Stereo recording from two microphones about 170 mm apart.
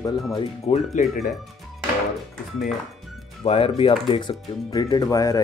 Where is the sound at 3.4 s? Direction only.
35° left (ahead or behind).